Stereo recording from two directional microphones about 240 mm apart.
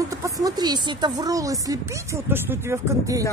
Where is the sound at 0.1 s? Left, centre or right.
Centre.